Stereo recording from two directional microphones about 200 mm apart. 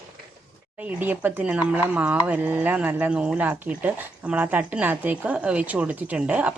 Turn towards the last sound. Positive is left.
turn(degrees=-10)  # may be behind; listen again after turning